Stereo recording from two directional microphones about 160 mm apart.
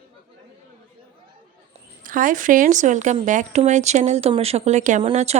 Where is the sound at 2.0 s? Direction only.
55° right (ahead or behind).